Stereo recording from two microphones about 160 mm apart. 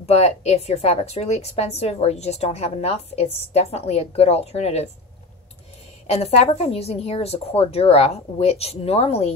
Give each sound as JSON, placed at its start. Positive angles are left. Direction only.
{"t": 0.0, "sound": "a woman's voice", "side_deg": 40}
{"t": 6.0, "sound": "a woman's voice", "side_deg": 40}